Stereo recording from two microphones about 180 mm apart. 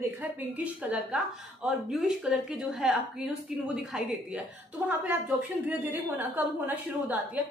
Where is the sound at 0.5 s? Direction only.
5° right (ahead or behind).